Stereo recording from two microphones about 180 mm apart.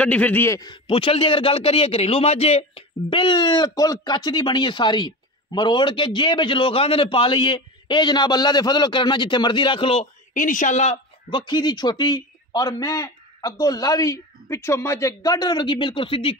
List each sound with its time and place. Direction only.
0.0 s a man's voice: 5° left (ahead or behind); by 10.0 s 30° left (ahead or behind)
10.3 s speech: 45° left (ahead or behind)
11.2 s a man's voice: 25° left (ahead or behind)